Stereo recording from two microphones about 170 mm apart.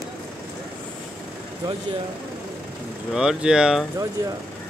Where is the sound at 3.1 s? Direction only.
5° right (ahead or behind).